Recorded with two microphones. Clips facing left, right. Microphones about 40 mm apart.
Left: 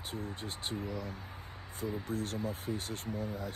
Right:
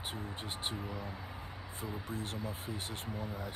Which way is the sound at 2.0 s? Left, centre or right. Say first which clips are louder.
Left 4 dB; right.